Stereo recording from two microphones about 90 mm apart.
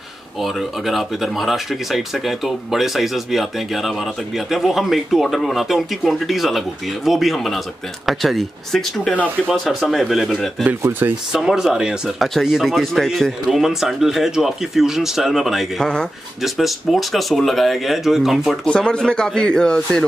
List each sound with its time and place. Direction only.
0.4 s speech: centre (ahead or behind)
10.8 s speech: 25° right (ahead or behind)
11.3 s speech: 5° right (ahead or behind)